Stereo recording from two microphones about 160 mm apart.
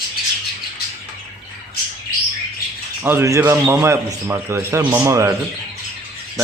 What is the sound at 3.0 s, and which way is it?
A man's voice, 15° right (ahead or behind).